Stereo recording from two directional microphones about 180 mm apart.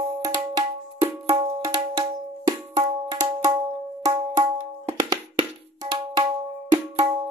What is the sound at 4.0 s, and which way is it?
Music, 15° right (ahead or behind).